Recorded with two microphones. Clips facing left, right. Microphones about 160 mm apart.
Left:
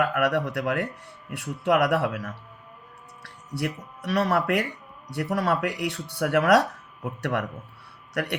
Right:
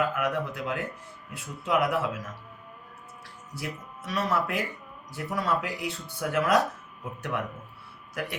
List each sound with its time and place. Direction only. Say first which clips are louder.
0.0 s a man's voice: left 4 dB; 75° left (ahead or behind)